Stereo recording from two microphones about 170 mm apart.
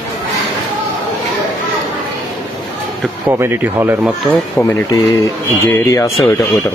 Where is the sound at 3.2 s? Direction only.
15° right (ahead or behind).